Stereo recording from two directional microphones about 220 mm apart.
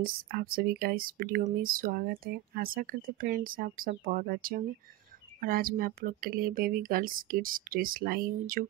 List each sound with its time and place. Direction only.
0.0 s speech: 45° right (ahead or behind)